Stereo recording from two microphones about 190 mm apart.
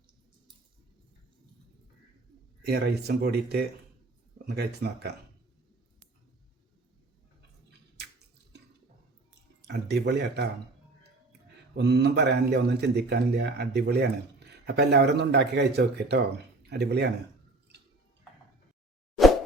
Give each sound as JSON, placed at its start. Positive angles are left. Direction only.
{"t": 2.6, "sound": "speech", "side_deg": -60}
{"t": 9.6, "sound": "speech", "side_deg": -60}
{"t": 11.8, "sound": "speech", "side_deg": -60}